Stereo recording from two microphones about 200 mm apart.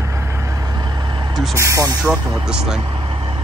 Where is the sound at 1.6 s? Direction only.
15° right (ahead or behind).